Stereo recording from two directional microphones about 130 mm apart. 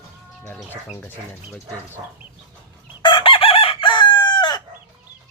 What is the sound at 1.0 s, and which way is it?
Speech, 15° left (ahead or behind).